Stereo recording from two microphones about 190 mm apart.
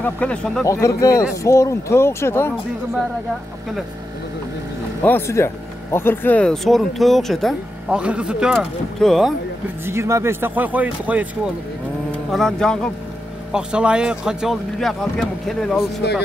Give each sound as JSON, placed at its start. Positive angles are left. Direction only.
{"t": 0.0, "sound": "speech", "side_deg": 5}
{"t": 0.7, "sound": "speech", "side_deg": 15}
{"t": 5.0, "sound": "speech", "side_deg": 10}
{"t": 9.8, "sound": "speech", "side_deg": -15}